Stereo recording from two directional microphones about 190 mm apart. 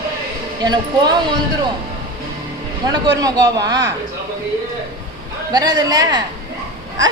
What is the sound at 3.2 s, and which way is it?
Speech, 20° right (ahead or behind).